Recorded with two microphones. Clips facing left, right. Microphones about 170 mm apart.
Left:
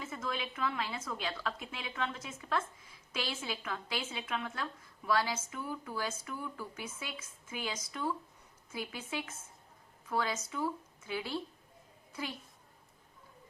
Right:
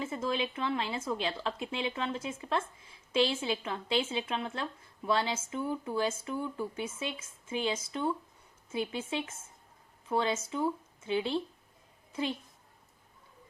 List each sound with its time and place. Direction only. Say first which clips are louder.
0.0 s speech: right 6 dB; 30° right (ahead or behind)